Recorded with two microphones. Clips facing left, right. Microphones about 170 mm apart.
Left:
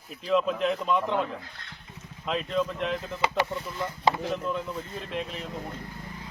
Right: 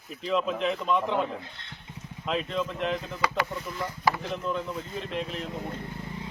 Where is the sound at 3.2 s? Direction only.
25° left (ahead or behind).